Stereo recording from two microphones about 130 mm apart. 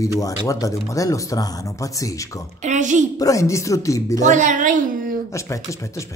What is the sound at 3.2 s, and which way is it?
Speech, 25° left (ahead or behind).